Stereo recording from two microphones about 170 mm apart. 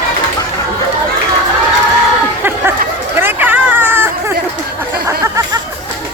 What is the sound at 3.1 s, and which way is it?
Hubbub, 10° right (ahead or behind).